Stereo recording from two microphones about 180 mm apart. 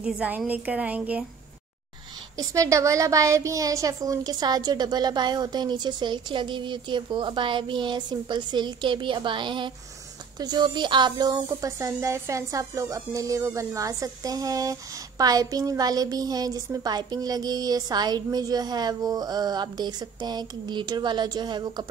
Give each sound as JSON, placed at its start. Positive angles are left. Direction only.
{"t": 0.0, "sound": "a woman's voice", "side_deg": -5}
{"t": 2.3, "sound": "speech", "side_deg": -20}